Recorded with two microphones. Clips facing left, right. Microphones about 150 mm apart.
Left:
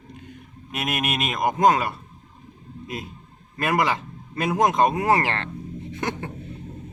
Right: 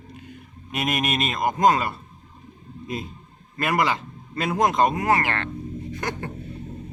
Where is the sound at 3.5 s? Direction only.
10° left (ahead or behind).